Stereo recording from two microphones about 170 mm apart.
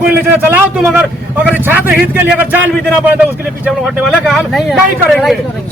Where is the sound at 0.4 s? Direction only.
10° right (ahead or behind).